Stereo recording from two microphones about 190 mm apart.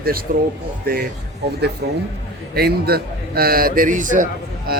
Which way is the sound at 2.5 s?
55° right (ahead or behind).